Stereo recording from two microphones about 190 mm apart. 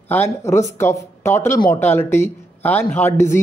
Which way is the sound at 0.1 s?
10° left (ahead or behind).